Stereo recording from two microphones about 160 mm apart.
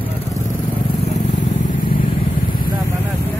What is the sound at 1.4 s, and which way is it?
Vehicle, 65° left (ahead or behind).